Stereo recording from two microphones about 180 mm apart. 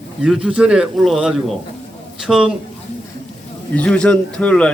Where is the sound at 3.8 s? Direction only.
5° left (ahead or behind).